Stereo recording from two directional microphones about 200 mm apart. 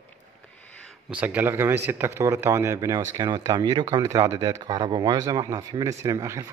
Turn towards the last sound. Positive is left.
turn(degrees=-15)  # may be behind; listen again after turning